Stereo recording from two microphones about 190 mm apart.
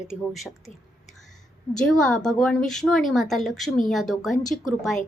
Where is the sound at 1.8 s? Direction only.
5° left (ahead or behind).